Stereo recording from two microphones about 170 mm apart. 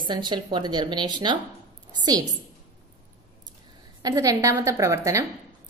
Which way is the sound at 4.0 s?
20° right (ahead or behind).